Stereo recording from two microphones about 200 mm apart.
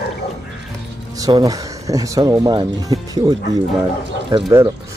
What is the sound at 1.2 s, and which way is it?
Speech, 15° right (ahead or behind).